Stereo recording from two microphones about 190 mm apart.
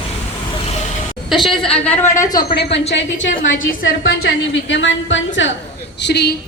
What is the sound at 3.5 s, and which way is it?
A woman's voice, 80° left.